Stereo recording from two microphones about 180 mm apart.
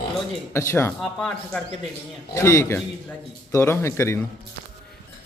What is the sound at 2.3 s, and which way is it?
A man's voice, 15° left (ahead or behind).